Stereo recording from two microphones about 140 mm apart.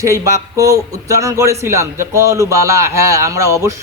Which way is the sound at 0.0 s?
20° right (ahead or behind).